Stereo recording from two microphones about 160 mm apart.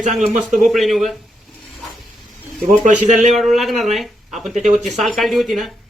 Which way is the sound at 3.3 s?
Centre (ahead or behind).